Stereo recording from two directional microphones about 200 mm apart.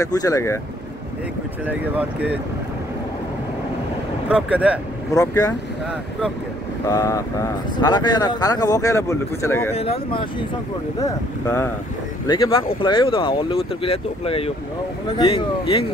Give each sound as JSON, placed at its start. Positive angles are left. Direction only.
{"t": 0.0, "sound": "speech", "side_deg": 15}
{"t": 1.7, "sound": "speech", "side_deg": -10}
{"t": 4.3, "sound": "speech", "side_deg": -5}
{"t": 5.1, "sound": "speech", "side_deg": 15}
{"t": 6.9, "sound": "speech", "side_deg": 15}
{"t": 9.8, "sound": "speech", "side_deg": 30}
{"t": 11.0, "sound": "speech", "side_deg": 15}
{"t": 12.3, "sound": "speech", "side_deg": 25}